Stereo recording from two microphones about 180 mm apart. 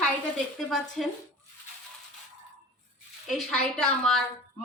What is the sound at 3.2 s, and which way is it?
Speech, centre (ahead or behind).